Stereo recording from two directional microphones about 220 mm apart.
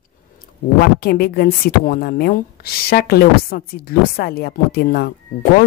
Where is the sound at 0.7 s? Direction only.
45° left (ahead or behind).